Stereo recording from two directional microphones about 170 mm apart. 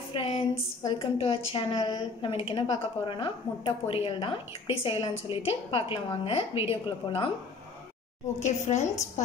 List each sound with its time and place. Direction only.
0.1 s a woman's voice: 30° left (ahead or behind)
8.4 s a woman's voice: 45° left (ahead or behind)